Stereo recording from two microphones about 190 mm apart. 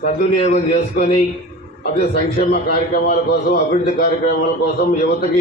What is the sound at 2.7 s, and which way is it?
A man's voice, 45° left (ahead or behind).